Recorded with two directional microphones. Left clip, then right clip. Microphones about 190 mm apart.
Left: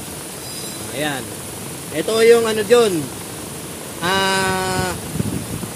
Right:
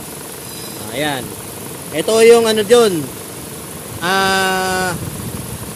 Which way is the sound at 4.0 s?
10° right (ahead or behind).